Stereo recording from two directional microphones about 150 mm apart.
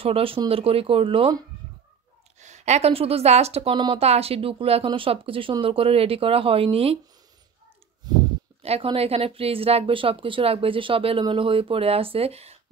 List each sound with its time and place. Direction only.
0.0 s speech: 40° right (ahead or behind)
2.4 s a woman's voice: 50° right (ahead or behind)
8.6 s speech: 40° right (ahead or behind)